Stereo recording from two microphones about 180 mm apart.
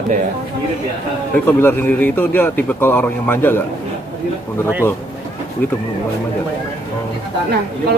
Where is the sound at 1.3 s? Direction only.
10° left (ahead or behind).